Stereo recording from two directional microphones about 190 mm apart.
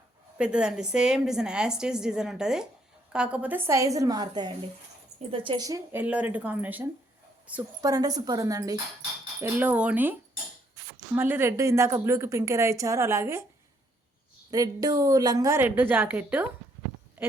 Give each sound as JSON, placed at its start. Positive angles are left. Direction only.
{"t": 0.3, "sound": "a woman's voice", "side_deg": -5}
{"t": 7.8, "sound": "a woman's voice", "side_deg": -20}
{"t": 14.5, "sound": "a woman's voice", "side_deg": -20}